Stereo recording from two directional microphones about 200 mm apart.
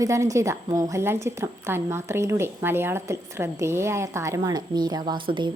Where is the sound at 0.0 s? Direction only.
15° right (ahead or behind).